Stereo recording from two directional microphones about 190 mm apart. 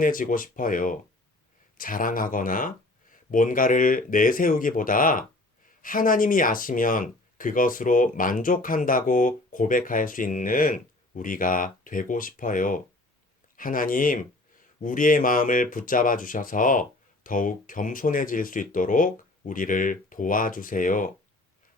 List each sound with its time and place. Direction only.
0.0 s speech: 45° left (ahead or behind)